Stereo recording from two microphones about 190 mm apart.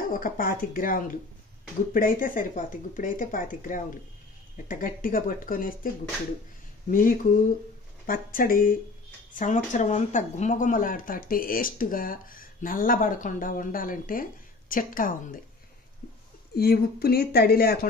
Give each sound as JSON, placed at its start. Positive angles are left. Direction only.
{"t": 0.1, "sound": "speech", "side_deg": 45}
{"t": 6.9, "sound": "speech", "side_deg": 45}
{"t": 16.5, "sound": "a woman's voice", "side_deg": 55}